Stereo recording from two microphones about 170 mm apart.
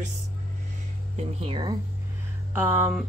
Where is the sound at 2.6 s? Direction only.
10° right (ahead or behind).